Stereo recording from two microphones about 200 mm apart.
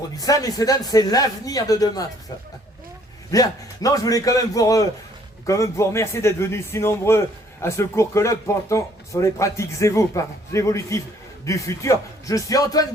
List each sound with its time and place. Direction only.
0.2 s speech: 20° left (ahead or behind)
3.3 s speech: 20° left (ahead or behind)